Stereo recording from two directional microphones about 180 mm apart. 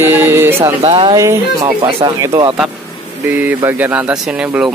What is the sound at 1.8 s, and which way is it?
Speech, 25° right (ahead or behind).